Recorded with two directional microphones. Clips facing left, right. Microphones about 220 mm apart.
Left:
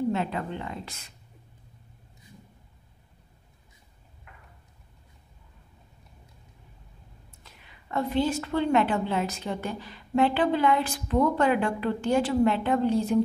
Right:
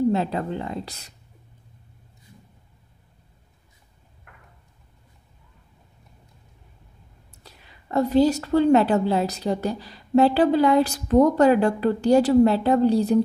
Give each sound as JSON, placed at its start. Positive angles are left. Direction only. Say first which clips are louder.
{"t": 0.1, "sound": "a woman's voice", "louder": "right 5 dB", "side_deg": -35}
{"t": 4.3, "sound": "a sound", "louder": "right 1 dB", "side_deg": -55}
{"t": 7.4, "sound": "a woman's voice", "louder": "right 6 dB", "side_deg": -40}